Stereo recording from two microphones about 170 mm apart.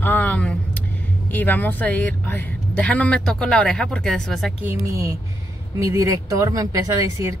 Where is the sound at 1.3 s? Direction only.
10° left (ahead or behind).